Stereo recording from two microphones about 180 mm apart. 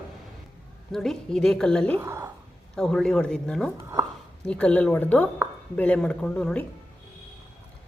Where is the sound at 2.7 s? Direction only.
5° left (ahead or behind).